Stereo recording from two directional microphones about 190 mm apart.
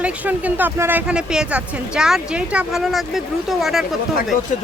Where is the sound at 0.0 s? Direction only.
10° right (ahead or behind).